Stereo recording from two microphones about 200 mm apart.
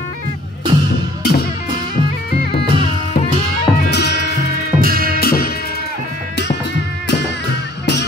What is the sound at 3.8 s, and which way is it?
Music, 60° left (ahead or behind).